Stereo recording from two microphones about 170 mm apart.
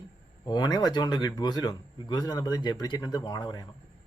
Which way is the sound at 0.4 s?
25° left (ahead or behind).